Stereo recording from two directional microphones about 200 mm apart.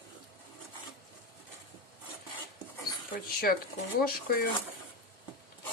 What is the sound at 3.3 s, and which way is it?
Speech, 50° left (ahead or behind).